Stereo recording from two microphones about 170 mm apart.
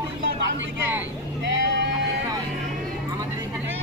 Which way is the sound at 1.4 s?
90° right.